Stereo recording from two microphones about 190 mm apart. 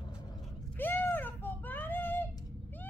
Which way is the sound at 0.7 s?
10° left (ahead or behind).